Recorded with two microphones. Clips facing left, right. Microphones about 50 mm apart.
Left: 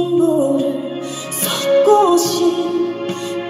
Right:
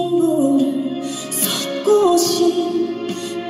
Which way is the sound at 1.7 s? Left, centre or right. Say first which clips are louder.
Left 3 dB; centre.